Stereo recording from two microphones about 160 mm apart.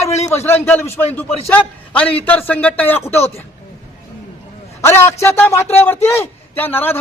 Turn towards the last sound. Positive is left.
turn(degrees=15)  # may be behind; listen again after turning